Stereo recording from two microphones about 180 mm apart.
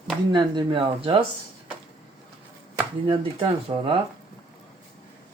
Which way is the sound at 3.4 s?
25° right (ahead or behind).